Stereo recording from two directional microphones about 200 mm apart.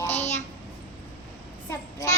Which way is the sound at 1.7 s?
15° left (ahead or behind).